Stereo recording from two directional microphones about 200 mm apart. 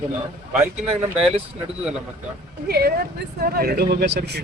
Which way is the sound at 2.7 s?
50° right (ahead or behind).